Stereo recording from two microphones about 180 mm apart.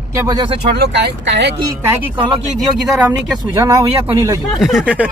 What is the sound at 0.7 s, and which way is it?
Speech, 70° right (ahead or behind).